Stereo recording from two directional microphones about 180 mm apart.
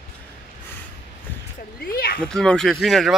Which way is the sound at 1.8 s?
55° left (ahead or behind).